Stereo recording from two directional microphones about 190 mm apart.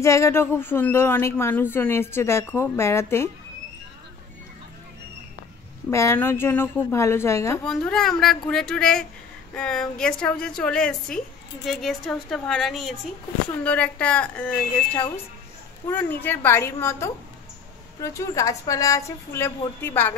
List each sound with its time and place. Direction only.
0.0 s speech: 15° left (ahead or behind)
5.9 s speech: 15° left (ahead or behind)
7.6 s a woman's voice: centre (ahead or behind)